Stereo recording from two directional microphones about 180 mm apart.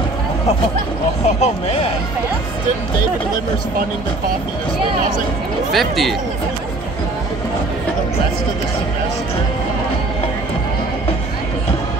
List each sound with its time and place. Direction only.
1.2 s speech: 35° left (ahead or behind)
5.7 s speech: centre (ahead or behind)